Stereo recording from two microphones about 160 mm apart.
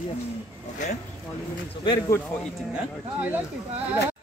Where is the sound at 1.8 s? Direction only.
20° left (ahead or behind).